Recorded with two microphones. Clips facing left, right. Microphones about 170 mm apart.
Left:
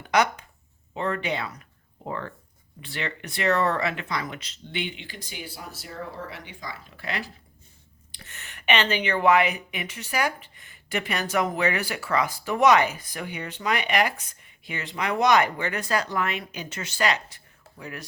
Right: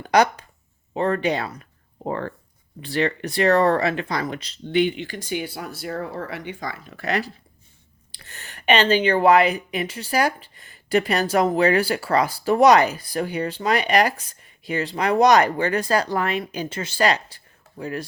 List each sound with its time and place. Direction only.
0.0 s speech: 35° right (ahead or behind)
5.3 s speech: 65° right (ahead or behind)
7.0 s speech: 45° right (ahead or behind)